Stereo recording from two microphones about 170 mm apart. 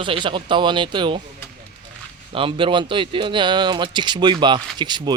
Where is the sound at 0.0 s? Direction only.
30° right (ahead or behind).